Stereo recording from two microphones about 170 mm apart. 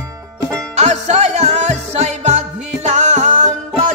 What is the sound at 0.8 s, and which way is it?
Music, 40° right (ahead or behind).